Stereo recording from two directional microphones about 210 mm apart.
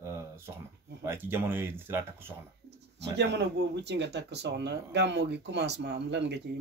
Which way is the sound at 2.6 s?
55° right (ahead or behind).